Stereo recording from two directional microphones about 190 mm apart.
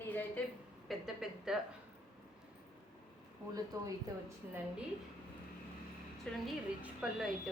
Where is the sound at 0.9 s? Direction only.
Centre (ahead or behind).